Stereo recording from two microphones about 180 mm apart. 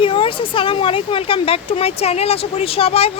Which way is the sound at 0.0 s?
30° left (ahead or behind).